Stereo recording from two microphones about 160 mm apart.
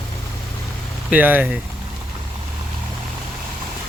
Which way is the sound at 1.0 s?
10° right (ahead or behind).